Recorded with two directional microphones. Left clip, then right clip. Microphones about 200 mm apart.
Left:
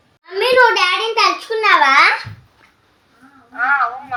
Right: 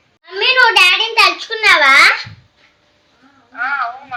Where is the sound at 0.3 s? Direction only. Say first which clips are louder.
Right 2 dB; 15° right (ahead or behind).